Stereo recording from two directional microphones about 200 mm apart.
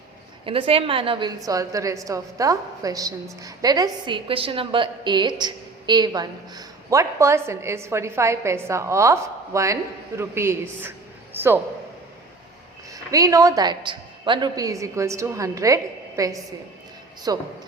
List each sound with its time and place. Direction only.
0.4 s a woman's voice: 25° right (ahead or behind); by 11.5 s 10° right (ahead or behind)
12.9 s a woman's voice: 15° right (ahead or behind)